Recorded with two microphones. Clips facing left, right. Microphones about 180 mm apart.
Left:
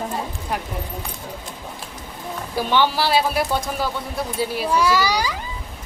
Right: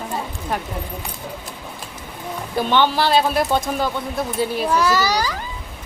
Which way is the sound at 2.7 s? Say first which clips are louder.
Right 2 dB; 10° left (ahead or behind).